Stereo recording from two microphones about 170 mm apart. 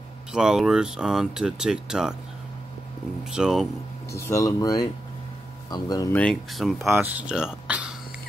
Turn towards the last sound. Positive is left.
turn(degrees=-10)  # may be behind; listen again after turning